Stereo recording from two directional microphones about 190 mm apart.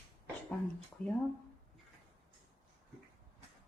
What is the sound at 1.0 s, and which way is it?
Speech, 5° left (ahead or behind).